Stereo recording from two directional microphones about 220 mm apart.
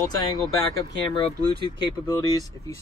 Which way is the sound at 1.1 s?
20° left (ahead or behind).